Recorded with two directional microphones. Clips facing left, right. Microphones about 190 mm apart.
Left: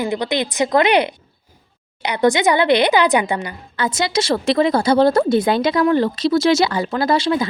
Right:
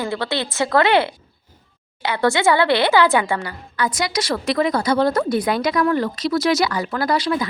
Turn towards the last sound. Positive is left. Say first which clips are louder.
# left 3 dB
turn(degrees=25)  # may be behind; listen again after turning